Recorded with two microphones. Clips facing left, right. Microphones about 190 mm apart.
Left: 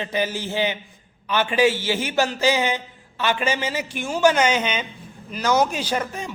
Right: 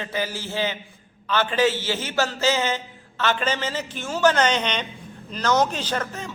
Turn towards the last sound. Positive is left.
turn(degrees=10)  # may be behind; listen again after turning